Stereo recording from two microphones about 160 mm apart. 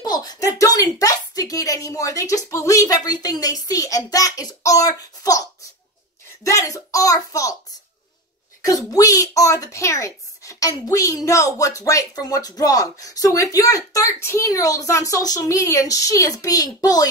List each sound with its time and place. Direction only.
0.0 s a sound: 25° left (ahead or behind)
0.6 s speech: 20° left (ahead or behind)
8.6 s speech: 20° left (ahead or behind)